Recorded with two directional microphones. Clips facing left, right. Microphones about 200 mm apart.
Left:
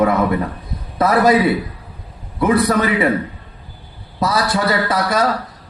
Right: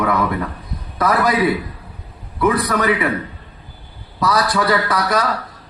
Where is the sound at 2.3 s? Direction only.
25° left (ahead or behind).